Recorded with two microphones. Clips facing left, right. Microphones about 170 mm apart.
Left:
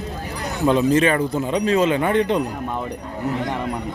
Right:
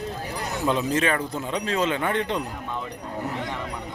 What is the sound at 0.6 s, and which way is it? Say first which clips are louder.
Speech: left 7 dB; centre (ahead or behind).